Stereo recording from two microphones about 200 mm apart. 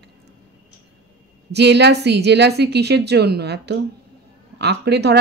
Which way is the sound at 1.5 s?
55° right (ahead or behind).